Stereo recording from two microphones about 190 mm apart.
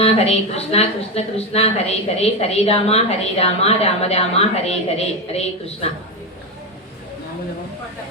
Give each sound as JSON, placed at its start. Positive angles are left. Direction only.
{"t": 0.0, "sound": "a woman's voice", "side_deg": 35}